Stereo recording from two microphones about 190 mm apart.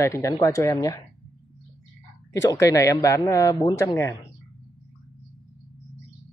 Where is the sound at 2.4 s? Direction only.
15° left (ahead or behind).